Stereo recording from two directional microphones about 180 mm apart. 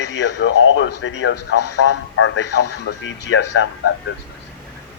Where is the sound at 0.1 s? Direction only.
75° left (ahead or behind).